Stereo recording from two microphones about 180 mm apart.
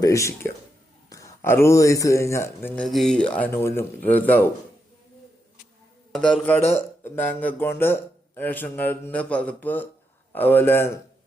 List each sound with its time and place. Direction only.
0.0 s speech: 15° left (ahead or behind)
6.1 s speech: 5° left (ahead or behind)